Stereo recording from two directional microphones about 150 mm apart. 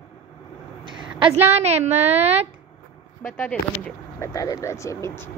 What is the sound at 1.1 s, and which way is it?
A woman's voice, 45° right (ahead or behind).